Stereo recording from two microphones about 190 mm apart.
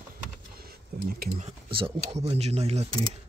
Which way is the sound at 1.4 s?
30° right (ahead or behind).